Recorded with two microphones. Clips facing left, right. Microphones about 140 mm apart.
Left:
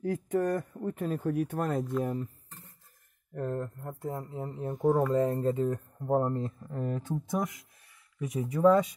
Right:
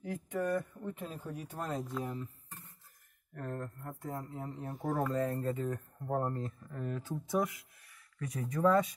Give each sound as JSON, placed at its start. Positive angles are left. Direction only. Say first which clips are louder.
{"t": 0.0, "sound": "speech", "louder": "left 7 dB", "side_deg": 45}
{"t": 3.3, "sound": "speech", "louder": "left 7 dB", "side_deg": 30}
{"t": 3.6, "sound": "speech", "louder": "left 5 dB", "side_deg": 20}
{"t": 6.6, "sound": "speech", "louder": "left 5 dB", "side_deg": 40}
{"t": 8.2, "sound": "speech", "louder": "left 6 dB", "side_deg": 15}